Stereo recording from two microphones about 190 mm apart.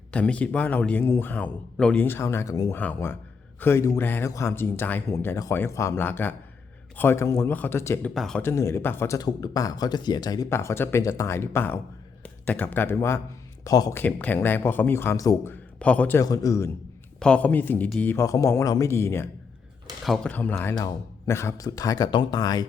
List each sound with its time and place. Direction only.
0.1 s speech: 5° left (ahead or behind)
8.1 s speech: centre (ahead or behind); by 22.6 s 20° left (ahead or behind)